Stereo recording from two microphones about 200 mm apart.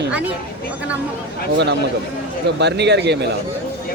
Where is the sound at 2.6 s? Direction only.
60° right (ahead or behind).